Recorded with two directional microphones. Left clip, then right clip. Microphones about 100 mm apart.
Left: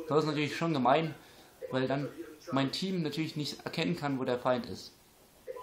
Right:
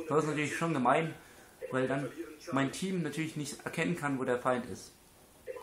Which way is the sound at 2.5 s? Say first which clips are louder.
Left 1 dB; 40° left (ahead or behind).